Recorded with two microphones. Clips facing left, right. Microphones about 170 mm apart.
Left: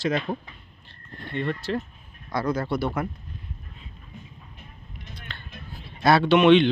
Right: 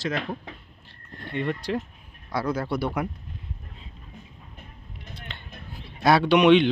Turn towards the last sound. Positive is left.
turn(degrees=-10)  # may be behind; listen again after turning